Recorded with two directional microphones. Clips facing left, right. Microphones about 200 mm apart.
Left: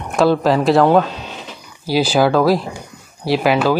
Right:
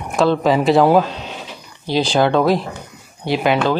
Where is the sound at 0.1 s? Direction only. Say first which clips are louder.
Left 1 dB; centre (ahead or behind).